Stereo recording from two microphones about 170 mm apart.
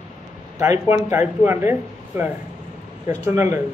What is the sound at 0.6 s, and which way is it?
Speech, 15° right (ahead or behind).